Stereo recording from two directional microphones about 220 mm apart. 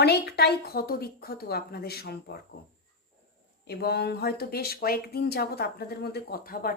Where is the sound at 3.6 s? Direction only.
45° left (ahead or behind).